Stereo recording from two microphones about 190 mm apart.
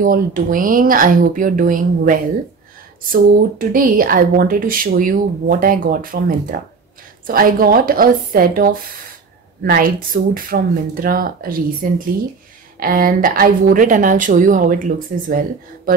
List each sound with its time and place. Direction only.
0.0 s speech: 45° right (ahead or behind)